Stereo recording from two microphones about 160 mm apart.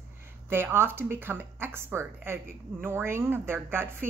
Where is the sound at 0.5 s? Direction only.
15° right (ahead or behind).